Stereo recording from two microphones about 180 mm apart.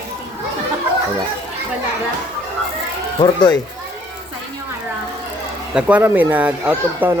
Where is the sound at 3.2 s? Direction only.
25° left (ahead or behind).